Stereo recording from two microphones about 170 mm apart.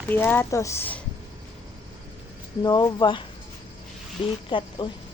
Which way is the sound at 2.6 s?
25° left (ahead or behind).